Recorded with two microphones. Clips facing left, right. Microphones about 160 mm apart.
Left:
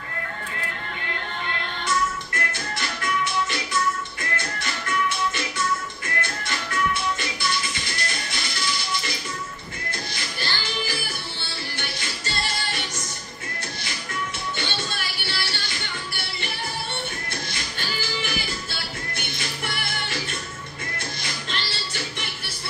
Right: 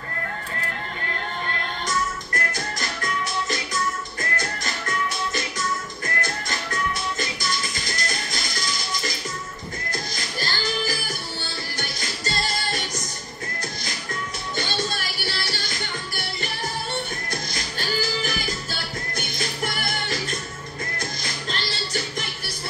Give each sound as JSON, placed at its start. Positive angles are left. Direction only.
{"t": 1.9, "sound": "music", "side_deg": -40}
{"t": 10.1, "sound": "music", "side_deg": -40}
{"t": 14.6, "sound": "music", "side_deg": -40}